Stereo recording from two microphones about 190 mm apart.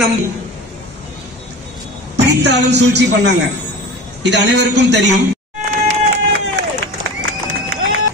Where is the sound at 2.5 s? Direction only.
65° right (ahead or behind).